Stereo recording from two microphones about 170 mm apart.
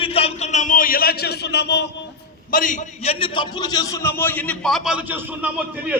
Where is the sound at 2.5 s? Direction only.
50° left (ahead or behind); by 6.0 s 10° right (ahead or behind).